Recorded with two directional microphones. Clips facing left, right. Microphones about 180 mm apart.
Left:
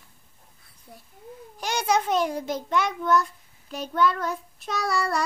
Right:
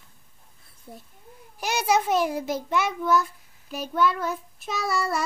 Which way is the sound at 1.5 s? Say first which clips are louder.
Right 1 dB; 5° right (ahead or behind).